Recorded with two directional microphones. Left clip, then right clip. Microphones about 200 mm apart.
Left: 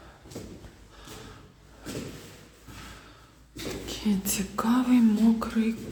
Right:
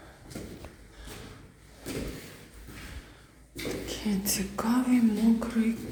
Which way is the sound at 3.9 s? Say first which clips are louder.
Left 4 dB; 40° left (ahead or behind).